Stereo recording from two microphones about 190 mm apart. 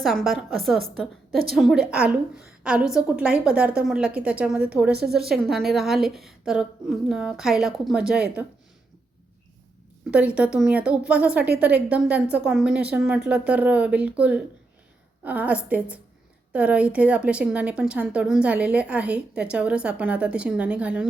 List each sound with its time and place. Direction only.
0.0 s a woman's voice: centre (ahead or behind)
10.1 s a woman's voice: 5° right (ahead or behind)